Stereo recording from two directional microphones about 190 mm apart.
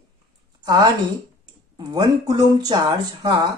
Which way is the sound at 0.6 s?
20° right (ahead or behind).